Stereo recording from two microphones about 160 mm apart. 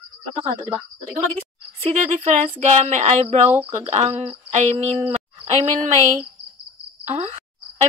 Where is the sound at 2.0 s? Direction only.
50° right (ahead or behind).